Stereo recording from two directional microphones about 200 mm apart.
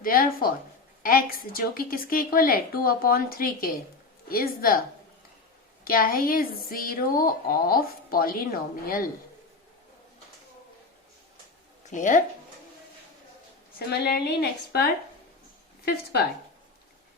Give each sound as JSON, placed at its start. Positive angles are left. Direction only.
{"t": 0.0, "sound": "speech", "side_deg": 45}
{"t": 5.8, "sound": "speech", "side_deg": 45}
{"t": 11.9, "sound": "speech", "side_deg": 40}
{"t": 13.7, "sound": "a woman's voice", "side_deg": 55}